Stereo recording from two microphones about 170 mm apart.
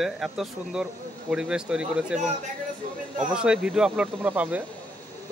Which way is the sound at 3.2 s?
5° right (ahead or behind).